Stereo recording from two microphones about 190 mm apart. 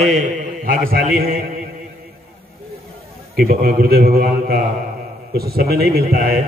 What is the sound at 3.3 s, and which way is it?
A man's voice, 50° right (ahead or behind).